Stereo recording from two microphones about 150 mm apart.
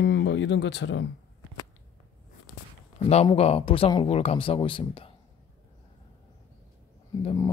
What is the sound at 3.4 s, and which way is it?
Speech, 40° left (ahead or behind).